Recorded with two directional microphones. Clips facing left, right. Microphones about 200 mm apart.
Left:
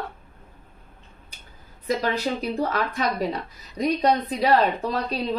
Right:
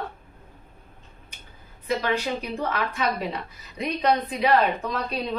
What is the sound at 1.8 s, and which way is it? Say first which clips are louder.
Speech: left 1 dB; 40° left (ahead or behind).